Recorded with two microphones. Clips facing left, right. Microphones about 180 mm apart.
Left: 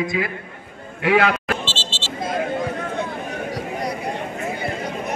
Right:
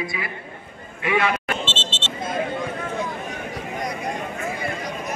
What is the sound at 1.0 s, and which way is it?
Speech, 75° left (ahead or behind).